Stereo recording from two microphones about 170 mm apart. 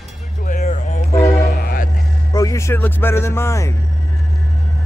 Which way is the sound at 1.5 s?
60° left (ahead or behind).